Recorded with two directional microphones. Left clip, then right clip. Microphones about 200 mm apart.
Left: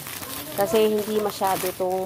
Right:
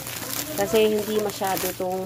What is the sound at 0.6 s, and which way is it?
Speech, 15° left (ahead or behind).